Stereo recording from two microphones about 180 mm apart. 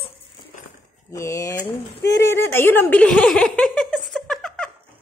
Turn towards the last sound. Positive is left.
turn(degrees=5)  # may be behind; listen again after turning